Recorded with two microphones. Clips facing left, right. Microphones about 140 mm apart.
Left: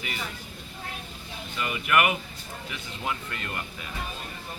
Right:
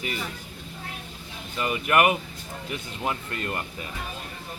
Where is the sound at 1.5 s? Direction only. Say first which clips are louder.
Right 3 dB; 35° right (ahead or behind).